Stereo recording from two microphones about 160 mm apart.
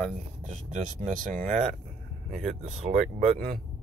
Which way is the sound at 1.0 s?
50° right (ahead or behind).